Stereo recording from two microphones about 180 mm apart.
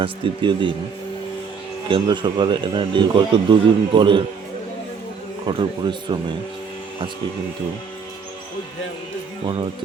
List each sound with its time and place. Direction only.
0.0 s speech: 25° right (ahead or behind)
1.9 s speech: 25° right (ahead or behind)
5.5 s speech: 25° right (ahead or behind)